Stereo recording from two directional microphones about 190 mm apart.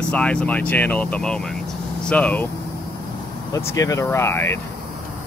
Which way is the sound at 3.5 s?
15° left (ahead or behind).